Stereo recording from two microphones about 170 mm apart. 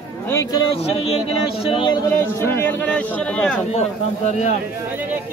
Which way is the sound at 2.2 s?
15° left (ahead or behind).